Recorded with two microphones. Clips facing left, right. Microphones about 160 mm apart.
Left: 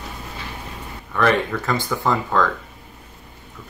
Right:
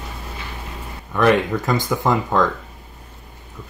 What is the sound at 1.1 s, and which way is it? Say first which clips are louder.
Speech: right 3 dB; 15° right (ahead or behind).